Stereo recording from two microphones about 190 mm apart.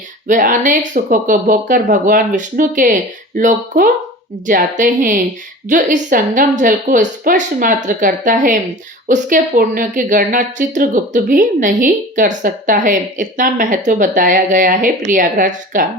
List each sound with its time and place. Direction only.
0.3 s a woman's voice: 45° right (ahead or behind)